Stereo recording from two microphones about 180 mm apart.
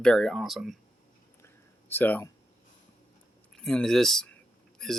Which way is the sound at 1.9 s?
10° left (ahead or behind).